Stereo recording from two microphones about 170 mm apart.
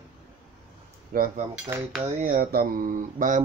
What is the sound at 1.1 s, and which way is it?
Cutlery, 55° right (ahead or behind).